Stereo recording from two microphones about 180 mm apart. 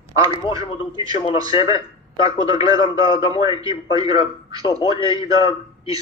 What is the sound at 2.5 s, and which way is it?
Speech, 20° right (ahead or behind).